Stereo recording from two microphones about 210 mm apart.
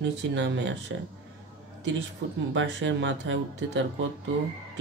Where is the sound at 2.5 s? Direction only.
60° right (ahead or behind).